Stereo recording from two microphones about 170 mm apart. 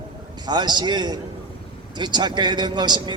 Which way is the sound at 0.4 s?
25° right (ahead or behind).